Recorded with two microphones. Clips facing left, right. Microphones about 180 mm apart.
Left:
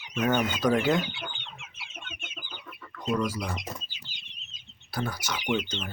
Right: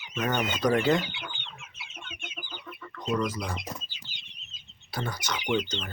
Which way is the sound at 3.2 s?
10° left (ahead or behind).